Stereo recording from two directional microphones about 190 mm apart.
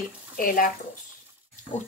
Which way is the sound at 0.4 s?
45° left (ahead or behind).